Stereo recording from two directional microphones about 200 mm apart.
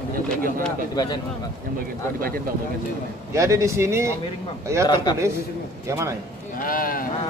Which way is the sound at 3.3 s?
15° right (ahead or behind).